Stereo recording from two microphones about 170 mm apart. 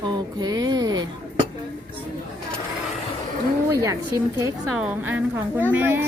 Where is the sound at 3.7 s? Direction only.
20° right (ahead or behind).